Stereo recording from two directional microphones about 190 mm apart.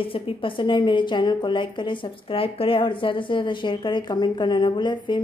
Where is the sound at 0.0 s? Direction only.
30° left (ahead or behind).